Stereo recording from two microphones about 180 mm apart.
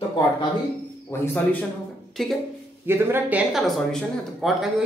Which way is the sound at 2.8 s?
10° right (ahead or behind).